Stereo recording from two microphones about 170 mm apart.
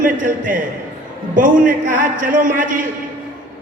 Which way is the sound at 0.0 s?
50° right (ahead or behind).